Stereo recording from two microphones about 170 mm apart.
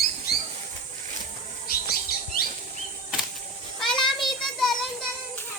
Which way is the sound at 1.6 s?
60° left (ahead or behind).